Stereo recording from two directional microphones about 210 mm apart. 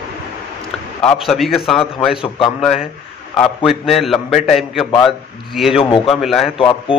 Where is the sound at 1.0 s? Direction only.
5° left (ahead or behind).